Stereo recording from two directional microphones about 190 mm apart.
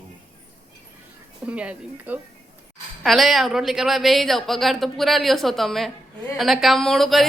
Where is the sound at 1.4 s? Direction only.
5° right (ahead or behind).